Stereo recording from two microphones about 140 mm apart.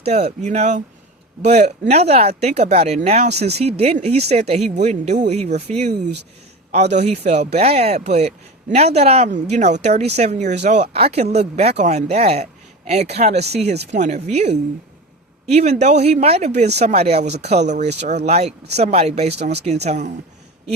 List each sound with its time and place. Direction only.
0.0 s speech: 50° right (ahead or behind)